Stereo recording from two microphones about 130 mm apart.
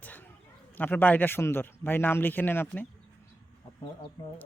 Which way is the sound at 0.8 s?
15° left (ahead or behind).